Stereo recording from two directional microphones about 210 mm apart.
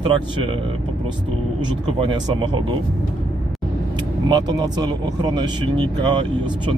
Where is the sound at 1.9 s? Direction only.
20° right (ahead or behind).